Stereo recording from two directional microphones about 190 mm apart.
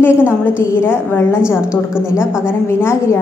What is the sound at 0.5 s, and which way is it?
Speech, 10° left (ahead or behind).